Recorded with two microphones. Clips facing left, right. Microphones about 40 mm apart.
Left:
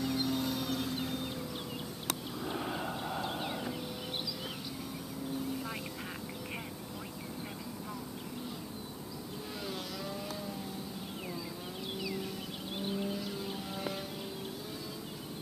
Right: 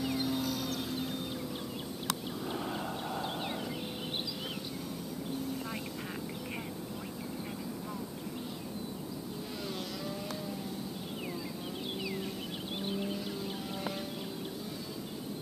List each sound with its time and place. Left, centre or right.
0.0 s vehicle: centre
2.4 s vehicle: centre
3.3 s horse: centre
12.0 s vehicle: centre